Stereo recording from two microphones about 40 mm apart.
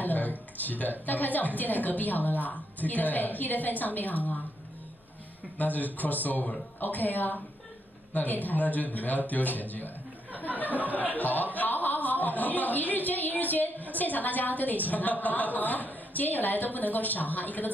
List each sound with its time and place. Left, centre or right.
0.0 s a sound: left
0.6 s a woman's voice: left
5.6 s a woman's voice: left